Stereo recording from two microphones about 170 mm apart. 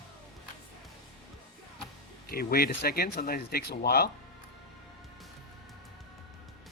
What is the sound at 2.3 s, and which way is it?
Speech, 65° left (ahead or behind).